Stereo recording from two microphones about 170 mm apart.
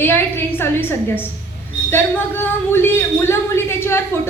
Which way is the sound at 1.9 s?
10° left (ahead or behind).